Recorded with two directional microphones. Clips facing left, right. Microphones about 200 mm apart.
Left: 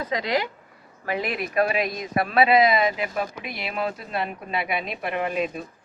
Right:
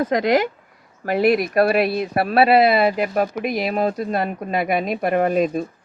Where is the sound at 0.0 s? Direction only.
50° right (ahead or behind).